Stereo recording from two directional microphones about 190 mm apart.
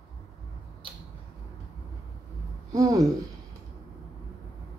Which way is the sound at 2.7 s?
15° right (ahead or behind).